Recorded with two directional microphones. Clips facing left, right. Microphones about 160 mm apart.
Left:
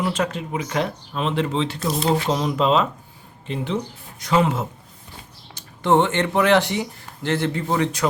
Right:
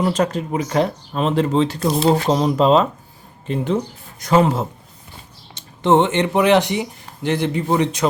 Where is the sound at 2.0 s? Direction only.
35° right (ahead or behind).